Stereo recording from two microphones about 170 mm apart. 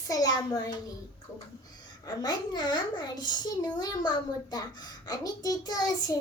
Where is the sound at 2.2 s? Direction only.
25° left (ahead or behind).